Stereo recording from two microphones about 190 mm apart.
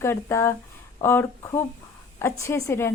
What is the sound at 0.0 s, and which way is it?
A woman's voice, 15° left (ahead or behind).